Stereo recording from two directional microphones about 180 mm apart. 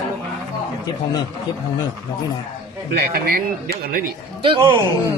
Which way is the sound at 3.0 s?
60° right (ahead or behind).